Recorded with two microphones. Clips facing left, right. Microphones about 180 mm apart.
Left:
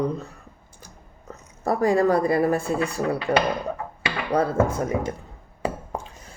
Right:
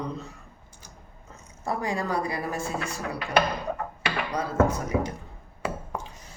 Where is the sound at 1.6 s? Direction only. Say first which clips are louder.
Left 9 dB; 55° left (ahead or behind).